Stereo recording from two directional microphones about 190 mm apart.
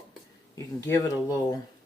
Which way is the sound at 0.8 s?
15° left (ahead or behind).